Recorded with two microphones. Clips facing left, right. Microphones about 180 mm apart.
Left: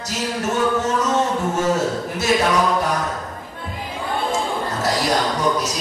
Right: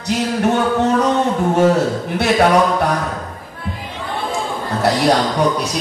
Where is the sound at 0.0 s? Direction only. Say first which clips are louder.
Right 7 dB; 60° right (ahead or behind).